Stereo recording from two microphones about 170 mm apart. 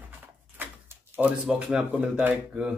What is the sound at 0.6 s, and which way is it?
Speech, 10° right (ahead or behind).